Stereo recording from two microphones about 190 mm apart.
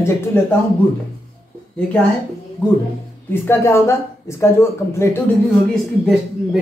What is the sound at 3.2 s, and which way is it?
Speech, 15° left (ahead or behind).